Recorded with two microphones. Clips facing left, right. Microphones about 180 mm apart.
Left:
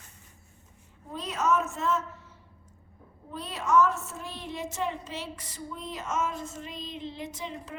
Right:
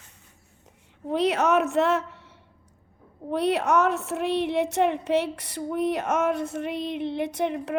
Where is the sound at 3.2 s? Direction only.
70° right (ahead or behind).